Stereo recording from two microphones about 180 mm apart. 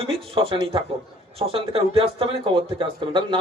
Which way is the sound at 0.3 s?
30° right (ahead or behind).